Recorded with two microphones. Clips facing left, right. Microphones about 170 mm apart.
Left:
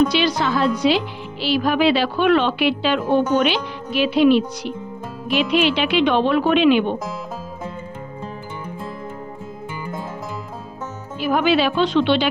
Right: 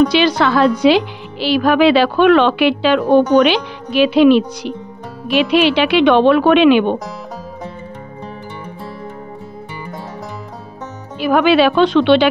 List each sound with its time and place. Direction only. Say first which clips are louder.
0.1 s a woman's voice: right 6 dB; 75° right (ahead or behind)
11.1 s a woman's voice: right 6 dB; 75° right (ahead or behind)